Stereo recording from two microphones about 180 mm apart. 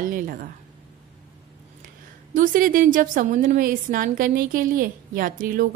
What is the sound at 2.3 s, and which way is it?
A woman's voice, 50° right (ahead or behind).